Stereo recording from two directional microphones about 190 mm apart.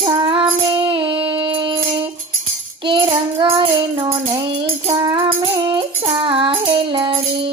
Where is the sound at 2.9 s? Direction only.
25° right (ahead or behind).